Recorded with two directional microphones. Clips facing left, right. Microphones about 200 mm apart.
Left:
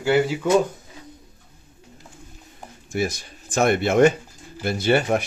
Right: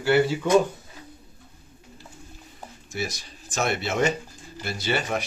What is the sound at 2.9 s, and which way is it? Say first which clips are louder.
Speech: left 7 dB; 55° left (ahead or behind).